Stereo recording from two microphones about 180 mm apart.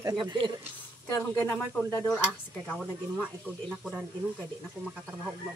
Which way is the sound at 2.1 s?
5° right (ahead or behind).